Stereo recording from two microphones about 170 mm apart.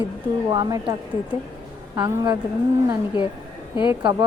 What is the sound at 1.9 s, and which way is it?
Speech, 20° right (ahead or behind).